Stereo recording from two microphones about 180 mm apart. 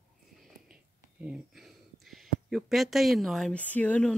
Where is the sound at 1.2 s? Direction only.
5° right (ahead or behind).